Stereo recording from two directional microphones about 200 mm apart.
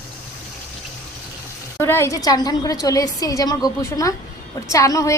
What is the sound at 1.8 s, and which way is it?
A woman's voice, 15° left (ahead or behind).